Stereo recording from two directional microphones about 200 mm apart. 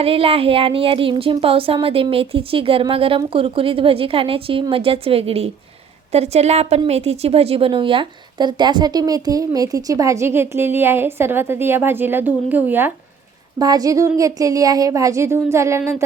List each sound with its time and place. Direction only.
0.0 s a woman's voice: 30° right (ahead or behind)